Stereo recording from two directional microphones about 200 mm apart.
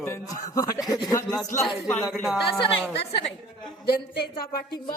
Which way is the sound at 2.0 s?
Centre (ahead or behind).